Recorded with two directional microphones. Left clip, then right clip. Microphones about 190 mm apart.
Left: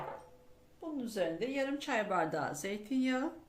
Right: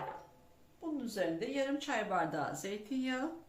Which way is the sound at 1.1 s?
40° left (ahead or behind).